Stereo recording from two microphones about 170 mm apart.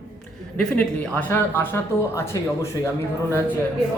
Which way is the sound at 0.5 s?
5° left (ahead or behind).